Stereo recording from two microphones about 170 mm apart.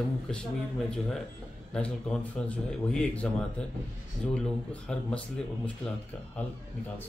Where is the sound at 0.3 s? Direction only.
5° left (ahead or behind).